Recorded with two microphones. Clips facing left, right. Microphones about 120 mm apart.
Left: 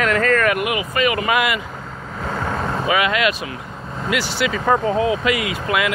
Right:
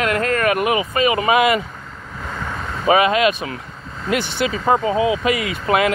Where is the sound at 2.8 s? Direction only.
35° right (ahead or behind).